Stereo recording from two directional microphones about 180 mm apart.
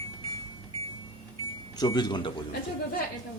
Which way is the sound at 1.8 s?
25° left (ahead or behind).